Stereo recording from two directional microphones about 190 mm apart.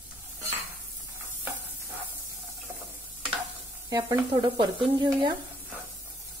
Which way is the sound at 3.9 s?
20° right (ahead or behind).